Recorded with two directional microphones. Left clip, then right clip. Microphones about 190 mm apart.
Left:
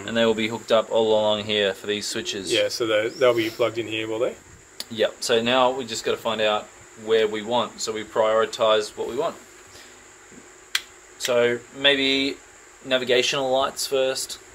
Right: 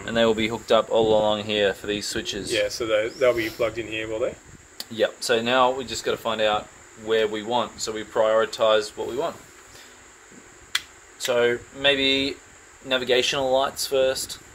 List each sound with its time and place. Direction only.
0.0 s speech: 40° right (ahead or behind); by 2.4 s 25° right (ahead or behind)
2.5 s speech: 25° left (ahead or behind)
4.7 s speech: 25° right (ahead or behind)
11.1 s speech: 25° right (ahead or behind)